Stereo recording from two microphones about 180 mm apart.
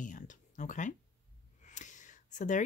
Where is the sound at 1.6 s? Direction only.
45° left (ahead or behind).